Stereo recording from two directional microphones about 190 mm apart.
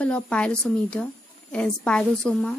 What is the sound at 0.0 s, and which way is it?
A woman's voice, 5° left (ahead or behind).